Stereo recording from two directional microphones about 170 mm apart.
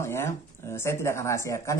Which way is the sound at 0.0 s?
15° left (ahead or behind).